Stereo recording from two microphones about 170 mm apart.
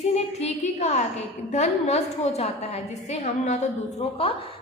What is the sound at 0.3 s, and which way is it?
A woman's voice, 40° left (ahead or behind).